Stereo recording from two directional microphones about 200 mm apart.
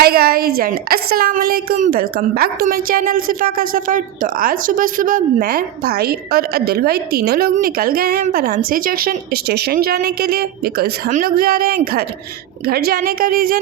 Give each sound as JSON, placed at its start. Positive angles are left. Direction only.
{"t": 0.0, "sound": "a woman's voice", "side_deg": -50}